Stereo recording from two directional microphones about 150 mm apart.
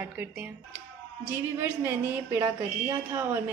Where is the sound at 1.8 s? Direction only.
10° right (ahead or behind).